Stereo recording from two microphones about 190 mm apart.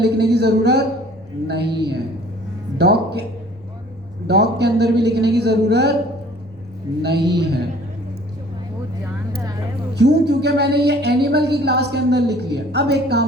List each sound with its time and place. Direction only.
0.0 s speech: 60° right (ahead or behind)
4.3 s speech: 60° right (ahead or behind)
7.0 s speech: 60° right (ahead or behind)
9.9 s speech: 60° right (ahead or behind)